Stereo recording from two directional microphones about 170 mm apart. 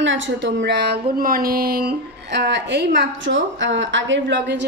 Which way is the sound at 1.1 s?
60° right (ahead or behind).